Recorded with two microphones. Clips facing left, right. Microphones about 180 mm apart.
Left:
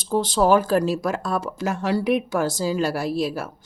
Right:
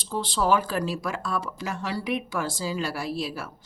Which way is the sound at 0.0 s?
45° left (ahead or behind).